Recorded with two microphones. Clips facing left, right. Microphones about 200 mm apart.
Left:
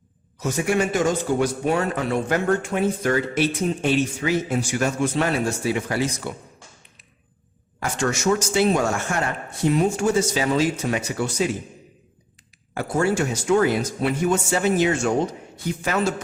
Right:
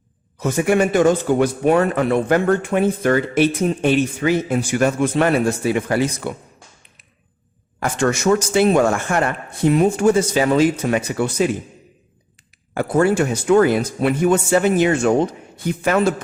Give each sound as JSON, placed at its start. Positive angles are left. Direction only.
{"t": 0.3, "sound": "speech", "side_deg": -55}
{"t": 7.9, "sound": "speech", "side_deg": -55}
{"t": 12.7, "sound": "speech", "side_deg": -55}